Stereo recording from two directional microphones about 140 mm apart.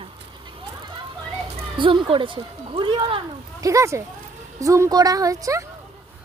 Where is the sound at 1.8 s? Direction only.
35° right (ahead or behind).